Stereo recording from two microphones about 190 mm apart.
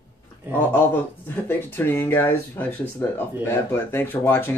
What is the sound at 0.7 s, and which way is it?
Speech, 10° left (ahead or behind).